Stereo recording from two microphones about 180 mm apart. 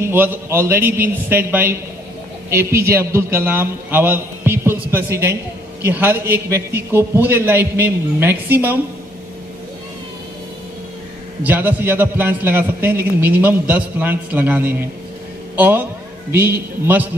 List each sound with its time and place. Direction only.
0.0 s a man's voice: 10° right (ahead or behind)
11.4 s a man's voice: 10° right (ahead or behind)